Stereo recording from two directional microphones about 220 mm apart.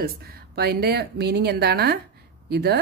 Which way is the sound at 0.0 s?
45° right (ahead or behind).